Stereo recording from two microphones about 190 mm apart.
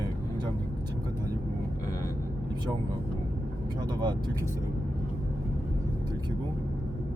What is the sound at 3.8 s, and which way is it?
Speech, 20° right (ahead or behind).